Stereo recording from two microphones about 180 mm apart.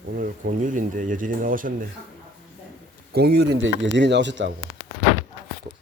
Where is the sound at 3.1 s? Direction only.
65° right (ahead or behind); by 4.5 s 85° right.